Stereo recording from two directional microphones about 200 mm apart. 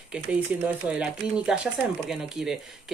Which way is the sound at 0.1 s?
5° right (ahead or behind).